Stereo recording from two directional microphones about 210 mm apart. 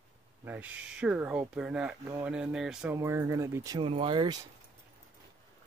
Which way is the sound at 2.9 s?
15° right (ahead or behind).